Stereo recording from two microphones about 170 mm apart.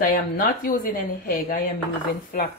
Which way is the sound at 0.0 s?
55° left (ahead or behind).